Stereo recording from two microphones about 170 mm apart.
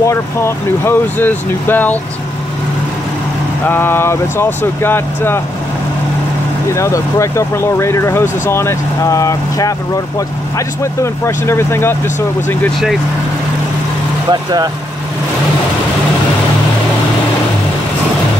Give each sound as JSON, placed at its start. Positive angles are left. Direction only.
{"t": 0.0, "sound": "speech", "side_deg": 15}
{"t": 3.6, "sound": "speech", "side_deg": 15}
{"t": 6.7, "sound": "speech", "side_deg": 15}
{"t": 14.3, "sound": "speech", "side_deg": -25}